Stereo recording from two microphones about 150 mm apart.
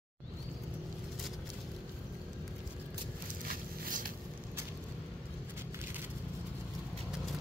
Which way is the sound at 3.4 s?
70° right (ahead or behind).